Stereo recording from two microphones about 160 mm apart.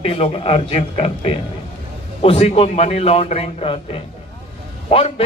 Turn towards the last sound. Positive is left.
turn(degrees=35)  # may be behind; listen again after turning